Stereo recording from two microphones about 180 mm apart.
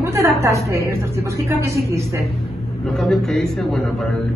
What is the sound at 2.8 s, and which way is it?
A man's voice, centre (ahead or behind).